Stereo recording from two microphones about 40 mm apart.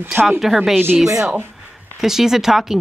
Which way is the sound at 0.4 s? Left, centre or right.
Centre.